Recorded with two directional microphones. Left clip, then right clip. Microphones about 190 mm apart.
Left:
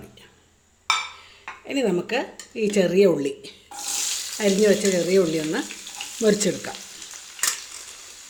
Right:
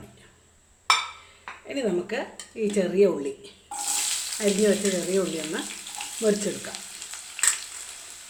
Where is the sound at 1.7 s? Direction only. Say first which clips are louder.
Left 4 dB; 40° left (ahead or behind).